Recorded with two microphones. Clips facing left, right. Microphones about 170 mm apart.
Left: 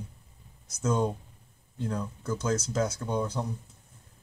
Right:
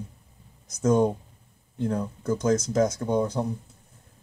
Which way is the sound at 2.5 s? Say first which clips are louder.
Right 6 dB; 15° right (ahead or behind).